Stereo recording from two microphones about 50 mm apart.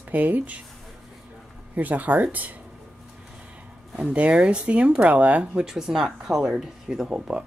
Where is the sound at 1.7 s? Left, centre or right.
Right.